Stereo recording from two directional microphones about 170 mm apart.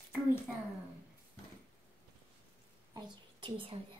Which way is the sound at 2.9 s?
30° right (ahead or behind).